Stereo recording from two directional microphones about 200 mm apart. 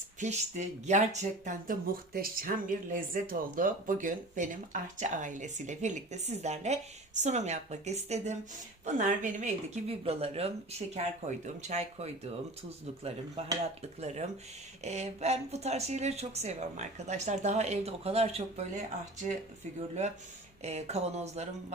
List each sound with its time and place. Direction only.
0.2 s speech: 35° right (ahead or behind)
14.0 s speech: 35° right (ahead or behind)
20.7 s speech: 35° right (ahead or behind)